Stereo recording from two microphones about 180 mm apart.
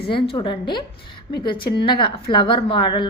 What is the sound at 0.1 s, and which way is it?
A woman's voice, 30° left (ahead or behind).